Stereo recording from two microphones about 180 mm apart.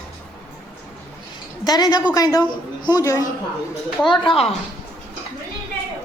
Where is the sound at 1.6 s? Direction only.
20° left (ahead or behind).